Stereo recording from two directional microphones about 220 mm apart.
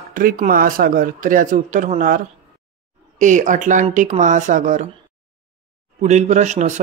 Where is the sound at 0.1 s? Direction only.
40° right (ahead or behind).